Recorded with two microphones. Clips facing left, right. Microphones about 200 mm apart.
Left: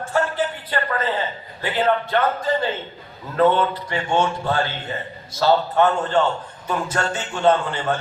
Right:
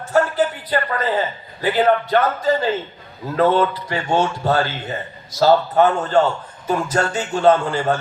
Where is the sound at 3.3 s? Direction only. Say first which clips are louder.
Right 1 dB; 40° right (ahead or behind).